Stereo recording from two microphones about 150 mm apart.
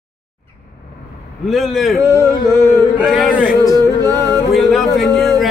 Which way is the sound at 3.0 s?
Centre (ahead or behind).